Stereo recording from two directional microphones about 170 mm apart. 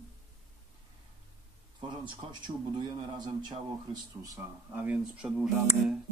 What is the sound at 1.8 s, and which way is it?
Speech, 25° right (ahead or behind).